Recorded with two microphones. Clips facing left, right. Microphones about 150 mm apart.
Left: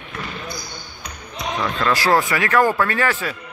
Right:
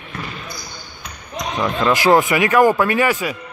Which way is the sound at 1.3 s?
15° right (ahead or behind).